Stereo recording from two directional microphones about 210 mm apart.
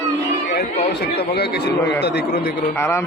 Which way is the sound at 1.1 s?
50° left (ahead or behind).